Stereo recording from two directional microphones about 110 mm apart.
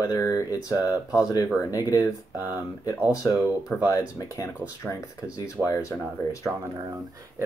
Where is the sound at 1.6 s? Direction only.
30° left (ahead or behind).